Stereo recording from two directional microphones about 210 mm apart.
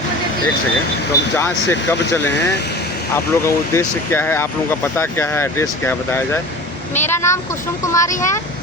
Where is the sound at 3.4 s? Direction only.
10° left (ahead or behind).